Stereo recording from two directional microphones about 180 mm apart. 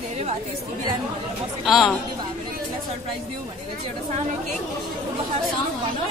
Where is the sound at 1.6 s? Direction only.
Centre (ahead or behind).